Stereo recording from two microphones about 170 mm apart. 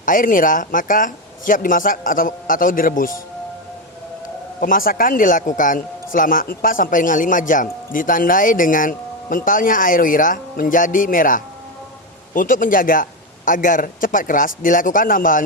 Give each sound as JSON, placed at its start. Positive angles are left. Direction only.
{"t": 0.0, "sound": "a man's voice", "side_deg": 50}
{"t": 4.6, "sound": "a man's voice", "side_deg": 55}